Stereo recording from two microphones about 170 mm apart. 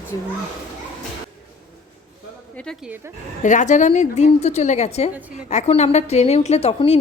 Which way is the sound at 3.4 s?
45° left (ahead or behind).